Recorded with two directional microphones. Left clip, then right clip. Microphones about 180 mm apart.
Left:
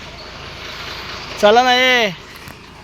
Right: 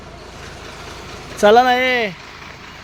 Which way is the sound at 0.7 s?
60° right (ahead or behind).